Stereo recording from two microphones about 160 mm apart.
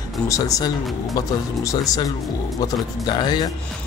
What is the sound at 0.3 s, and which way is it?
Speech, 20° left (ahead or behind).